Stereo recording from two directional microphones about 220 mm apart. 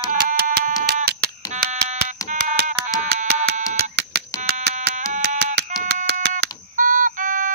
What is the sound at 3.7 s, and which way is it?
Fire alarm, 50° right (ahead or behind).